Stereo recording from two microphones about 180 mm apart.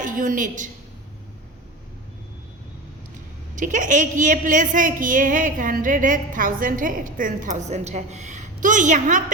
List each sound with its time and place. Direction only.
0.0 s a woman's voice: 45° right (ahead or behind)
3.5 s a woman's voice: 45° right (ahead or behind)